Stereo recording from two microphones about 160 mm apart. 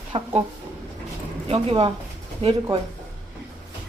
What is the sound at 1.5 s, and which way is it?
Speech, 35° right (ahead or behind).